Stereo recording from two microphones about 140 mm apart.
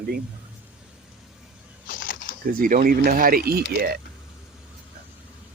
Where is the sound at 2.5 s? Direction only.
80° right.